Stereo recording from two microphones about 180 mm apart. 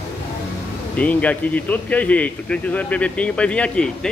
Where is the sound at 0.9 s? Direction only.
10° left (ahead or behind).